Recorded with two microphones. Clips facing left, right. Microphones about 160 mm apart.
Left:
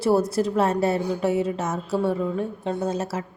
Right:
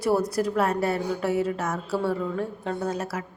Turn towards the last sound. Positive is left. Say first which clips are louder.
# left 3 dB
turn(degrees=20)  # may be behind; listen again after turning